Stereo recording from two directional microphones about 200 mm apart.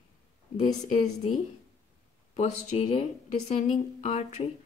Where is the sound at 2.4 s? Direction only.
35° left (ahead or behind).